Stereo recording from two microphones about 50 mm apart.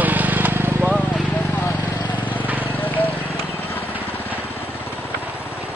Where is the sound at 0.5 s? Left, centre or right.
Right.